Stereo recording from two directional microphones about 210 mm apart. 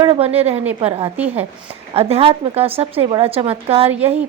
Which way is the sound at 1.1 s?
5° right (ahead or behind).